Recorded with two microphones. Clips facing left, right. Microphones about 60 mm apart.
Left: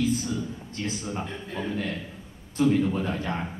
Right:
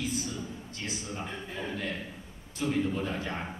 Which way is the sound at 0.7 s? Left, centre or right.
Left.